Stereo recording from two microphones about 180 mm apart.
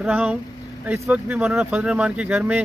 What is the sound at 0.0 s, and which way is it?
Speech, 10° right (ahead or behind).